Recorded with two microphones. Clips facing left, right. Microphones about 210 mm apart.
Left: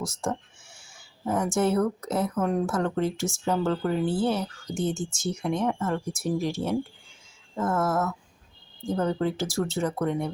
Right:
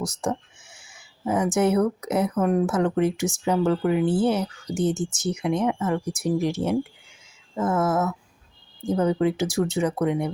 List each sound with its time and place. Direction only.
0.0 s a sound: centre (ahead or behind)
1.5 s speech: 20° right (ahead or behind)
2.5 s speech: 5° right (ahead or behind)
2.7 s speech: 15° right (ahead or behind)
7.5 s a sound: centre (ahead or behind)
8.9 s speech: 15° right (ahead or behind)